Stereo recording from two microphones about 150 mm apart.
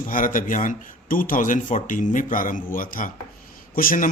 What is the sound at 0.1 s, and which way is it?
Speech, 60° left (ahead or behind).